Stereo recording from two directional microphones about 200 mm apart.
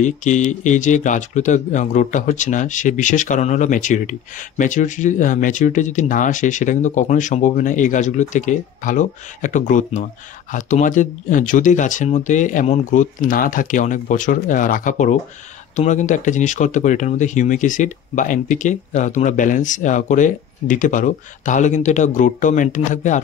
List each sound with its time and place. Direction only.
0.0 s speech: 35° left (ahead or behind)